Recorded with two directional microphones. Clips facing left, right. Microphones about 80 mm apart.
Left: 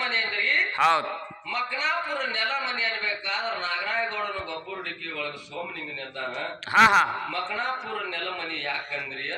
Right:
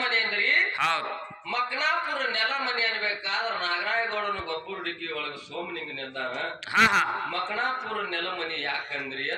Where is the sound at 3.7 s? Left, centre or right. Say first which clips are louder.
Right 1 dB; right.